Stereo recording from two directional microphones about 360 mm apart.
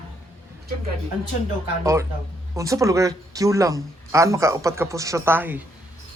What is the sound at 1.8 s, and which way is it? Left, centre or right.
Speech, centre.